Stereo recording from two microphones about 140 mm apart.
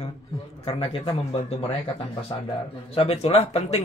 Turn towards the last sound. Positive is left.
turn(degrees=45)  # may be behind; listen again after turning